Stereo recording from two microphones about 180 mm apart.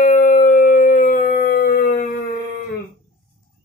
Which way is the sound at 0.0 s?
45° left (ahead or behind).